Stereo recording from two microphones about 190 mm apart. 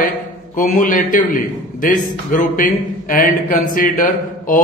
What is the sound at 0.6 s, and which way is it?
Speech, 45° left (ahead or behind).